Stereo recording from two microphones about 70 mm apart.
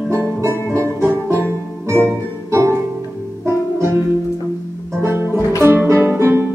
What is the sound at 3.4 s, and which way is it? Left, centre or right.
Music, right.